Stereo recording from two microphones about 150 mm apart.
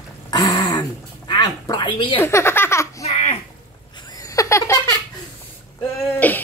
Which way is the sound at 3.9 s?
30° left (ahead or behind).